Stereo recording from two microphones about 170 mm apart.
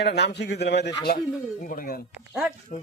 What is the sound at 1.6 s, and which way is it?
Speech, 55° left (ahead or behind).